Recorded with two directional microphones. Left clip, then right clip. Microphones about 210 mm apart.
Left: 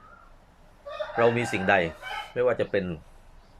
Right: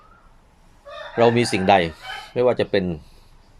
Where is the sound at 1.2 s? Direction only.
35° right (ahead or behind).